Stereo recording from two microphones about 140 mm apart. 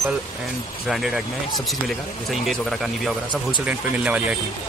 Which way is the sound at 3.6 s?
10° right (ahead or behind).